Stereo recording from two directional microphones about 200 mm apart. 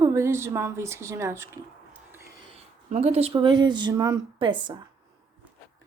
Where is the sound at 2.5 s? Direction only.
35° right (ahead or behind).